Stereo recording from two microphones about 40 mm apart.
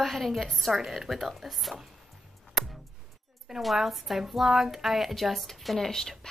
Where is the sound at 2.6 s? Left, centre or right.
Centre.